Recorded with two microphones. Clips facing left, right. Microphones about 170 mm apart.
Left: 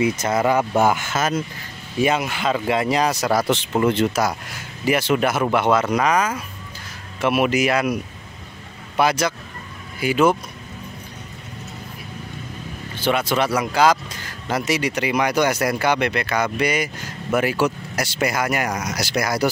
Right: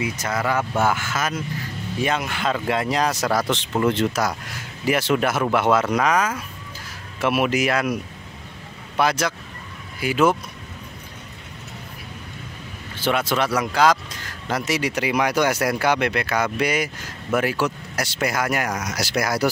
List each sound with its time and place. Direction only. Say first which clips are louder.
0.0 s speech: left 6 dB; 20° left (ahead or behind)
2.0 s speech: left 4 dB; 5° left (ahead or behind)
13.0 s speech: left 1 dB; centre (ahead or behind)